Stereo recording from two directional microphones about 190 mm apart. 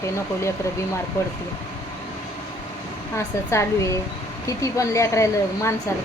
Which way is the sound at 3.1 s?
15° left (ahead or behind).